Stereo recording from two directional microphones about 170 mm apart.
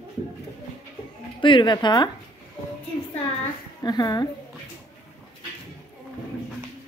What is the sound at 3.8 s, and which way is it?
Speech, 25° left (ahead or behind).